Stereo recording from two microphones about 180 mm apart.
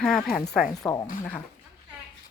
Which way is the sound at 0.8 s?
20° left (ahead or behind).